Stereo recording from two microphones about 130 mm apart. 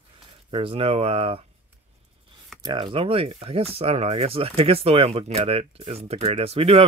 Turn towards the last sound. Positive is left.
turn(degrees=-50)  # may be behind; listen again after turning